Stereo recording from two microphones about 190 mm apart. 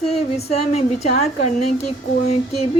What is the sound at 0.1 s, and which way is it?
A woman's voice, 35° left (ahead or behind).